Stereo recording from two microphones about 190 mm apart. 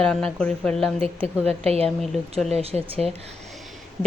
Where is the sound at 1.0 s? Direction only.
30° right (ahead or behind).